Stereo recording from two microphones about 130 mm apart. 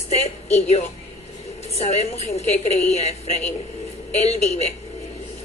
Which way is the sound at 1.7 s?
55° left (ahead or behind).